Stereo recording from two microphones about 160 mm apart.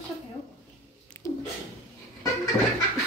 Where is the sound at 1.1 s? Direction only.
20° left (ahead or behind).